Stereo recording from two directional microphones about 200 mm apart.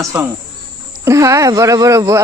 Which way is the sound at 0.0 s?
15° right (ahead or behind).